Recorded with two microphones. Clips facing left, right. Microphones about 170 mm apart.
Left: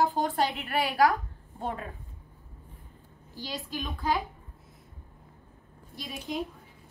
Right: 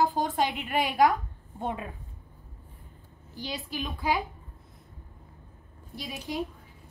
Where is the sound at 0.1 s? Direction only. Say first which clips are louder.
Even; 15° right (ahead or behind).